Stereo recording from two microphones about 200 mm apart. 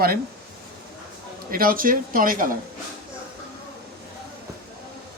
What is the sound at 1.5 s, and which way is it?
A man's voice, 45° right (ahead or behind).